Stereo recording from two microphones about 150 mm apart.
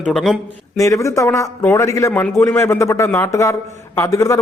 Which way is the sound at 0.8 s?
20° left (ahead or behind).